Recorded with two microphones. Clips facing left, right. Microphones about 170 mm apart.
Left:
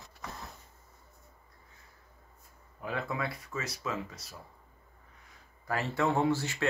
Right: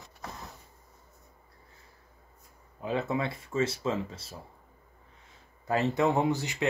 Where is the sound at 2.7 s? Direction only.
25° right (ahead or behind).